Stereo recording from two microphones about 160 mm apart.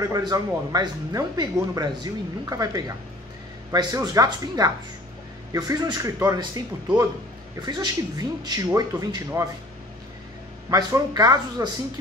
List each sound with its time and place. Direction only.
0.0 s speech: 20° right (ahead or behind)
10.7 s speech: 25° right (ahead or behind)